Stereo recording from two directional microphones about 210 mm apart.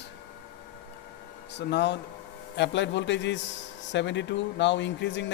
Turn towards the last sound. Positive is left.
turn(degrees=60)  # may be behind; listen again after turning